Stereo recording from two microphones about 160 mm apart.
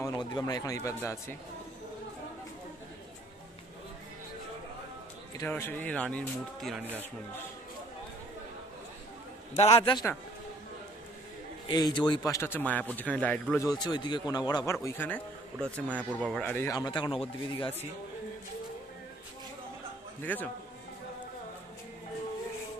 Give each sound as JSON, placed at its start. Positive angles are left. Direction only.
{"t": 0.0, "sound": "a sound", "side_deg": 25}
{"t": 0.8, "sound": "speech", "side_deg": 20}
{"t": 5.4, "sound": "speech", "side_deg": 15}
{"t": 9.5, "sound": "a man's voice", "side_deg": 40}
{"t": 11.6, "sound": "speech", "side_deg": 30}
{"t": 13.7, "sound": "a man's voice", "side_deg": 25}
{"t": 20.2, "sound": "a man's voice", "side_deg": 10}